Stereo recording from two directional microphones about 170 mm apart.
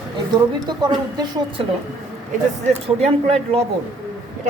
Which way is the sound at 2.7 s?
35° right (ahead or behind).